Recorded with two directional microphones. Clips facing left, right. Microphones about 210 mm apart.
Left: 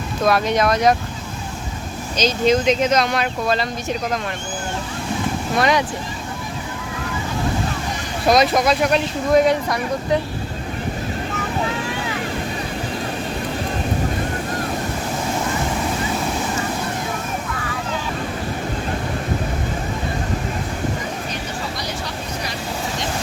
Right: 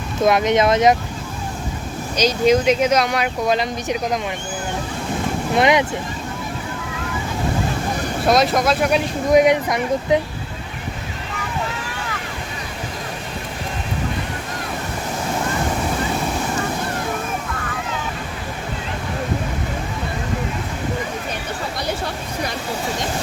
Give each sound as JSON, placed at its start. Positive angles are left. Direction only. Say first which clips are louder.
{"t": 0.2, "sound": "speech", "louder": "right 2 dB", "side_deg": -20}
{"t": 2.1, "sound": "speech", "louder": "right 2 dB", "side_deg": -10}
{"t": 5.5, "sound": "speech", "louder": "right 3 dB", "side_deg": -20}
{"t": 8.3, "sound": "speech", "louder": "left 1 dB", "side_deg": 0}
{"t": 9.3, "sound": "speech", "louder": "right 2 dB", "side_deg": -15}